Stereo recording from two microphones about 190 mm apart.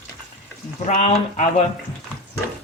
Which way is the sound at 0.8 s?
35° left (ahead or behind).